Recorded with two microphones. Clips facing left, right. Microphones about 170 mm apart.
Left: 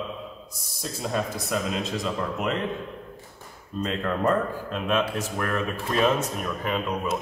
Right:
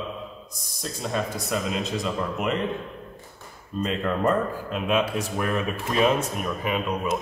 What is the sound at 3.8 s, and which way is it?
Speech, 5° right (ahead or behind).